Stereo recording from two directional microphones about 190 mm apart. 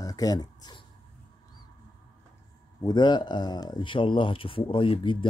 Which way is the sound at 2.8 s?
20° left (ahead or behind).